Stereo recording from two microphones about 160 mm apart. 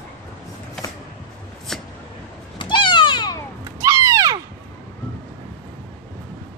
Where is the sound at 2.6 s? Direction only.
30° left (ahead or behind).